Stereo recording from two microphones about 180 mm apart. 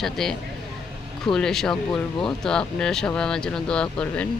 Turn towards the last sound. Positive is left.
turn(degrees=5)  # may be behind; listen again after turning